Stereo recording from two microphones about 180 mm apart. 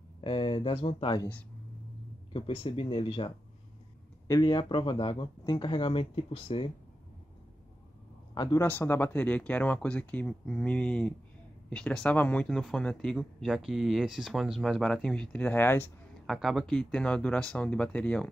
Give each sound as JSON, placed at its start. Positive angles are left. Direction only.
{"t": 0.2, "sound": "speech", "side_deg": 30}
{"t": 2.3, "sound": "speech", "side_deg": 30}
{"t": 8.4, "sound": "speech", "side_deg": 20}
{"t": 16.3, "sound": "speech", "side_deg": 0}